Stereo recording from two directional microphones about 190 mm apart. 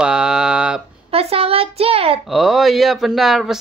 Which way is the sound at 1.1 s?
30° right (ahead or behind).